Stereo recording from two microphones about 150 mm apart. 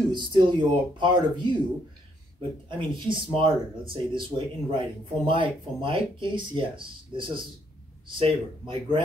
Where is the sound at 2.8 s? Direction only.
35° right (ahead or behind).